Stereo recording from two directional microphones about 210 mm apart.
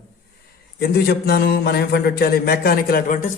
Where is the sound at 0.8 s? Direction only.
50° left (ahead or behind).